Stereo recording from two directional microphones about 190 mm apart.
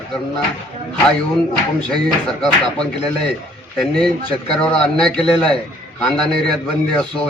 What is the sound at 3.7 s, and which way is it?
A man's voice, centre (ahead or behind).